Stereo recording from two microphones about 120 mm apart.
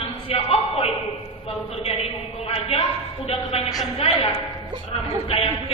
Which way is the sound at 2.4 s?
55° left (ahead or behind).